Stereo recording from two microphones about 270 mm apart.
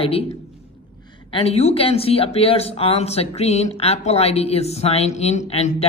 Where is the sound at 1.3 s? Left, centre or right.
Left.